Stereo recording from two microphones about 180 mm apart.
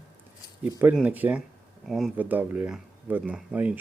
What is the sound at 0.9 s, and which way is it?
Speech, 10° right (ahead or behind).